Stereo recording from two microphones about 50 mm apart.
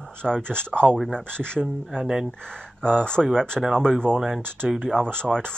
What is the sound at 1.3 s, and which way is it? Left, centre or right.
Speech, centre.